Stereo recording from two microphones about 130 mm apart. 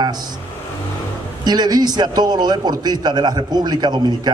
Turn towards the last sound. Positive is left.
turn(degrees=-35)  # may be behind; listen again after turning